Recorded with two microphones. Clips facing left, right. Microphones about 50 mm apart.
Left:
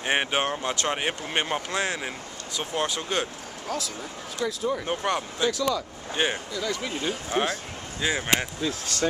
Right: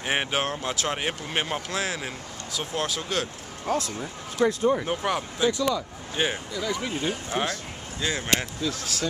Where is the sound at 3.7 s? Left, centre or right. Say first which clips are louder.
Right 5 dB; right.